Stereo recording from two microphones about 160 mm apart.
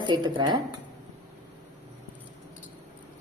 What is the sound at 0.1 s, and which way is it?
Speech, 30° right (ahead or behind).